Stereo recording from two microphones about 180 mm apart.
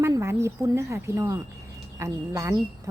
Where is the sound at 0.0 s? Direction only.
15° right (ahead or behind).